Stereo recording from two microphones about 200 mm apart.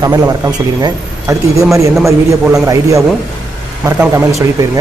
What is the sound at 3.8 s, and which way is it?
Speech, 15° right (ahead or behind).